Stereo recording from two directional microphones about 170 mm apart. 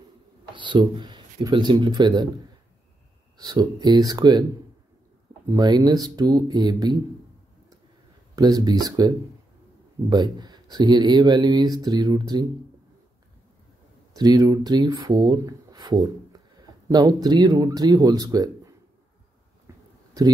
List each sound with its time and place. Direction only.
0.6 s speech: 25° right (ahead or behind)
3.3 s speech: 25° right (ahead or behind)
5.5 s speech: 20° right (ahead or behind)
8.4 s speech: 25° right (ahead or behind)
14.1 s speech: 25° right (ahead or behind)